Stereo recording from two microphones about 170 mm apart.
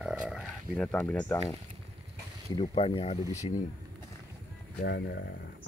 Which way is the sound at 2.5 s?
35° left (ahead or behind).